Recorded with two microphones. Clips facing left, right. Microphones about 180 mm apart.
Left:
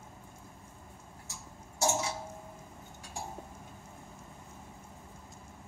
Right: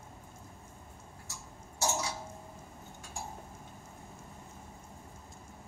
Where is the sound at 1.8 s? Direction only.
20° left (ahead or behind).